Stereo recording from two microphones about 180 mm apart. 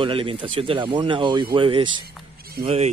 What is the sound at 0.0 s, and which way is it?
Speech, 30° right (ahead or behind).